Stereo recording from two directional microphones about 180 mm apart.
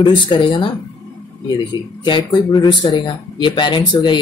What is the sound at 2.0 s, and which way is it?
Speech, 25° left (ahead or behind).